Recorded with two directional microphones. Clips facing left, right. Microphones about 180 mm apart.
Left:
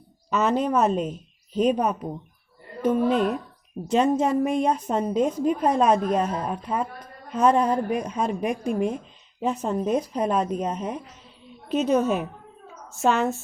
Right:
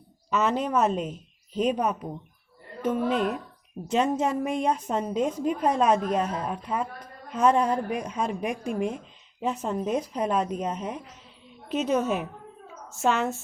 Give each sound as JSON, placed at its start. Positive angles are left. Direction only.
{"t": 0.3, "sound": "a woman's voice", "side_deg": 40}